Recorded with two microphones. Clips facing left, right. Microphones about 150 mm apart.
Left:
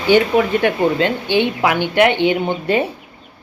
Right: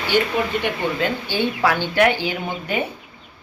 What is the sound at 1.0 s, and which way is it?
Speech, 20° left (ahead or behind).